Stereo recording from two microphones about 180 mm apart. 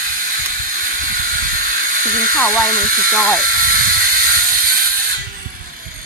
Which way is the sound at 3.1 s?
15° left (ahead or behind).